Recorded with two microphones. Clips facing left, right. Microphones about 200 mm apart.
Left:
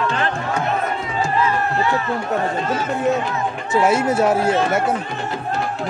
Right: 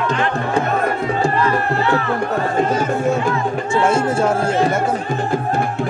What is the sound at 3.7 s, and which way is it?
Speech, 5° left (ahead or behind).